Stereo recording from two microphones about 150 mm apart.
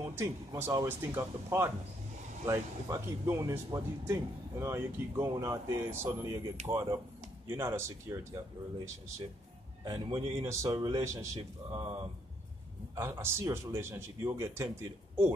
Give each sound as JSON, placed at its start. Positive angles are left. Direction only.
{"t": 0.0, "sound": "speech", "side_deg": -15}
{"t": 9.8, "sound": "speech", "side_deg": -30}
{"t": 12.9, "sound": "speech", "side_deg": -15}